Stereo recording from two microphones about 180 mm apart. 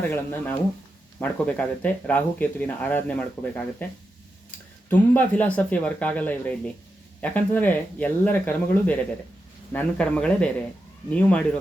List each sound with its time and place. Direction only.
0.0 s speech: 10° left (ahead or behind)
4.9 s speech: 10° left (ahead or behind)